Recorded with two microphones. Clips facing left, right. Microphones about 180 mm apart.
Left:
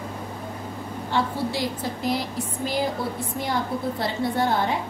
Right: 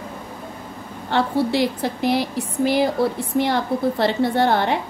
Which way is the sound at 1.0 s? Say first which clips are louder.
Right 6 dB; 70° right (ahead or behind).